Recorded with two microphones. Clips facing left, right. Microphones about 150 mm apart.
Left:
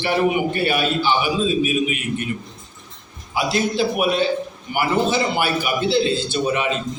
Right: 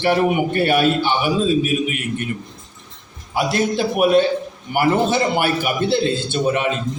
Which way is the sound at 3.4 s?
55° right (ahead or behind).